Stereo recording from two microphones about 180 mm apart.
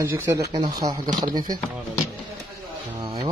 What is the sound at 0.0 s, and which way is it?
Speech, 15° right (ahead or behind).